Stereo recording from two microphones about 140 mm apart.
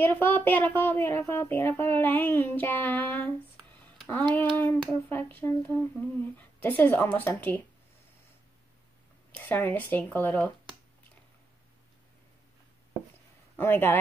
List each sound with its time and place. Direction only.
0.0 s humming: 15° left (ahead or behind)
9.3 s humming: 15° left (ahead or behind)
13.6 s humming: 15° left (ahead or behind)